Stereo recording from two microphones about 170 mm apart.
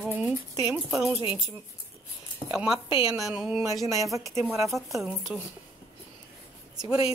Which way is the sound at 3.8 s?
20° right (ahead or behind).